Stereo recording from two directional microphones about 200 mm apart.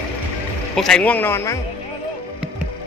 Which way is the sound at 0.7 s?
5° left (ahead or behind).